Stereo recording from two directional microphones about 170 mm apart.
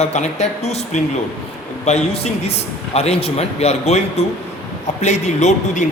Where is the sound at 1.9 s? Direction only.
40° left (ahead or behind).